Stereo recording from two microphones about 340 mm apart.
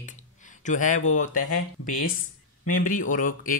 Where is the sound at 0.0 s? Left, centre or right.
Left.